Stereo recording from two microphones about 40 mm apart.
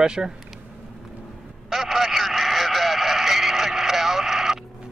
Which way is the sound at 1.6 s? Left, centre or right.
Centre.